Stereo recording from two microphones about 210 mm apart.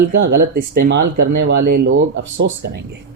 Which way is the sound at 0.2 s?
50° right (ahead or behind).